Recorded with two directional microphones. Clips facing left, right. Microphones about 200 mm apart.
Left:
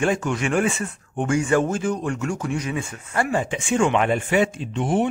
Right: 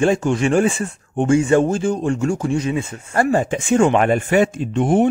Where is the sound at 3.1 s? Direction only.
40° right (ahead or behind).